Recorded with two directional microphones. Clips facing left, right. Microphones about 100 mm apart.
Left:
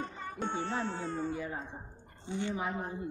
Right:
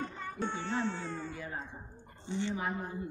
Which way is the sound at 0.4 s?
25° left (ahead or behind).